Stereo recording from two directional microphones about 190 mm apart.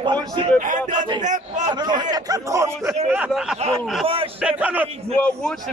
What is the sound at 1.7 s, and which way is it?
A man's voice, 20° right (ahead or behind).